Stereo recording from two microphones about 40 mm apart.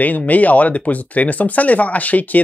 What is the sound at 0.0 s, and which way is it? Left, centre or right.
Speech, left.